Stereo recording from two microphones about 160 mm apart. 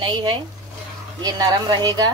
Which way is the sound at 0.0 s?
30° right (ahead or behind).